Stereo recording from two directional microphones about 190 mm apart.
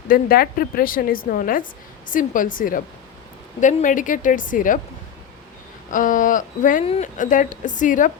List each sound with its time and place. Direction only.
0.1 s a woman's voice: 50° left (ahead or behind)
5.9 s a woman's voice: 45° left (ahead or behind)